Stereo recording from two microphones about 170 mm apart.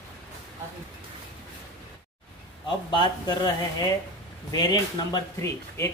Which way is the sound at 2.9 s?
25° left (ahead or behind).